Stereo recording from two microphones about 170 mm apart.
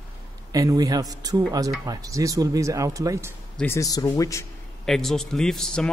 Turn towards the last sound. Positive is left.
turn(degrees=5)  # may be behind; listen again after turning